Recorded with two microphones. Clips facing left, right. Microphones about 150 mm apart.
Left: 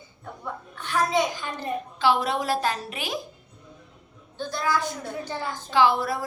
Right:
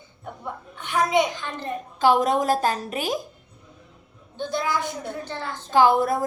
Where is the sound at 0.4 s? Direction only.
20° right (ahead or behind).